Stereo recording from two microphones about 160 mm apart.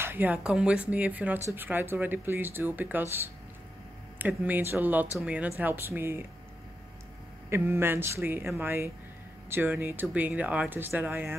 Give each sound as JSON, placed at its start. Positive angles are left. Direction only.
{"t": 0.0, "sound": "speech", "side_deg": -10}
{"t": 7.4, "sound": "speech", "side_deg": -15}